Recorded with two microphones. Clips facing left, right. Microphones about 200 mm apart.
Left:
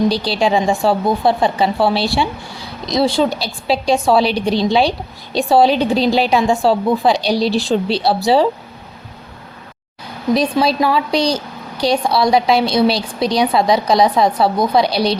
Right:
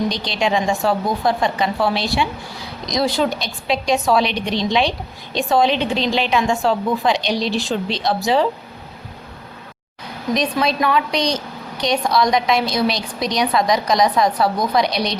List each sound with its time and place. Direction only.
0.1 s a woman's voice: 35° left (ahead or behind)
10.3 s a woman's voice: 30° left (ahead or behind)